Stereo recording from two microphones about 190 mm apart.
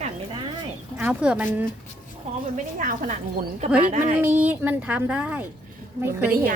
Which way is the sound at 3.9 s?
40° right (ahead or behind).